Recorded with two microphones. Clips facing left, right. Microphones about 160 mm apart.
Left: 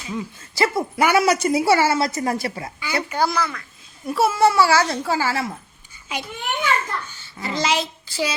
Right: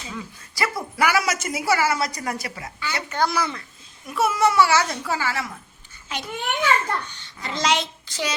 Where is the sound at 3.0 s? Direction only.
10° left (ahead or behind).